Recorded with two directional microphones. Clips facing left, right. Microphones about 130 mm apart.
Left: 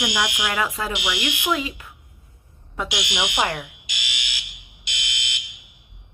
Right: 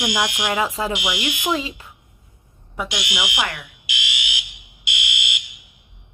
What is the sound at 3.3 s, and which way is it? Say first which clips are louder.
Speech: left 3 dB; 35° left (ahead or behind).